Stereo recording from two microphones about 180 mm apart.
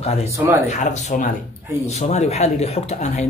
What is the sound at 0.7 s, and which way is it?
Speech, 45° left (ahead or behind).